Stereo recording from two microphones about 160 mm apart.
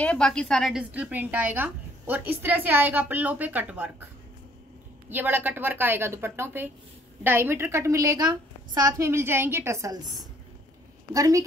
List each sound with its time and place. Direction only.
0.0 s a woman's voice: 5° left (ahead or behind); by 4.1 s 10° right (ahead or behind)
5.1 s a woman's voice: 10° right (ahead or behind)
11.1 s a woman's voice: 20° right (ahead or behind)